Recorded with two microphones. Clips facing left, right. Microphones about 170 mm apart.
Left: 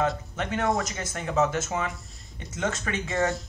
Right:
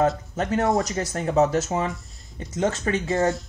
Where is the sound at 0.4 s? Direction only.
40° right (ahead or behind).